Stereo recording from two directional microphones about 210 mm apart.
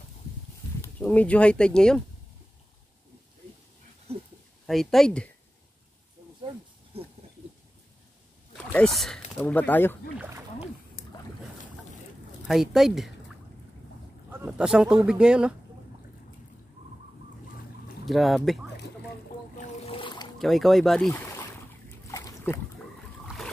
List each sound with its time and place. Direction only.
0.9 s speech: 5° left (ahead or behind)
4.6 s speech: centre (ahead or behind)
8.6 s speech: 5° left (ahead or behind)
10.1 s speech: 10° right (ahead or behind)
12.4 s speech: centre (ahead or behind)
14.4 s speech: 5° right (ahead or behind)
18.0 s speech: centre (ahead or behind)
19.5 s boat: 35° left (ahead or behind)
20.3 s speech: centre (ahead or behind)
21.1 s boat: 15° left (ahead or behind)
23.2 s a sound: centre (ahead or behind)